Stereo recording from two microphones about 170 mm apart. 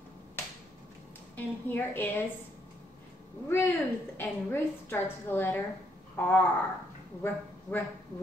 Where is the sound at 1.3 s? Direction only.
10° left (ahead or behind).